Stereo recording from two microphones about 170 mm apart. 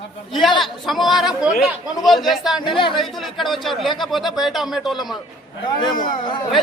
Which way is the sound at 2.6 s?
30° left (ahead or behind).